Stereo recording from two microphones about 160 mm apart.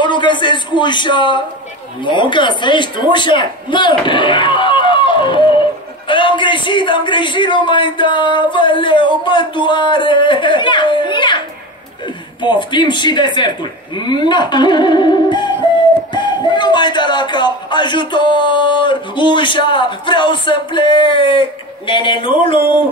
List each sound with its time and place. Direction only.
0.0 s speech: 30° left (ahead or behind)